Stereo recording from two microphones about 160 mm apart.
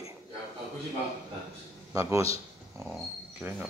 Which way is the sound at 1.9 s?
20° right (ahead or behind).